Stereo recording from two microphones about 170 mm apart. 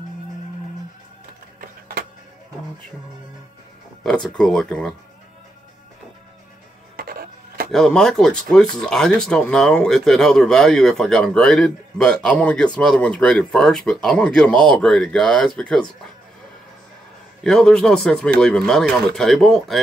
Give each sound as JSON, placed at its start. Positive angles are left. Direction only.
{"t": 1.6, "sound": "a sound", "side_deg": -60}
{"t": 4.0, "sound": "speech", "side_deg": 5}
{"t": 7.0, "sound": "music", "side_deg": -60}
{"t": 7.7, "sound": "speech", "side_deg": 0}
{"t": 17.4, "sound": "speech", "side_deg": 5}